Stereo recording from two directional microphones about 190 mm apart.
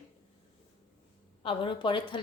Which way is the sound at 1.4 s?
30° left (ahead or behind).